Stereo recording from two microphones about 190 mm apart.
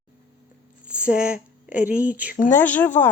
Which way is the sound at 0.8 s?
5° right (ahead or behind).